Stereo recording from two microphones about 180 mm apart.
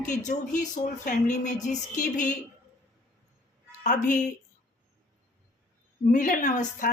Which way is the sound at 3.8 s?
45° left (ahead or behind).